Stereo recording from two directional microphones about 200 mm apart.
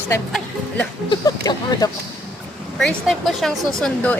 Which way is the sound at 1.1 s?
20° left (ahead or behind).